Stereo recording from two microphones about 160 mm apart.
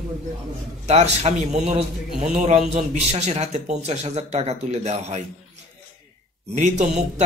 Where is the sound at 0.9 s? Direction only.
45° right (ahead or behind).